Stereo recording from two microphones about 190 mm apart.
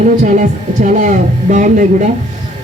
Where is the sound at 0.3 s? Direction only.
40° right (ahead or behind).